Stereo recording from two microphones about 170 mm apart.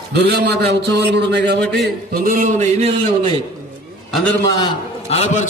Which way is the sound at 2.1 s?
55° right (ahead or behind).